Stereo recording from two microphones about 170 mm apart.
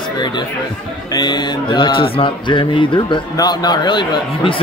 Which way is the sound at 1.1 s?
25° left (ahead or behind).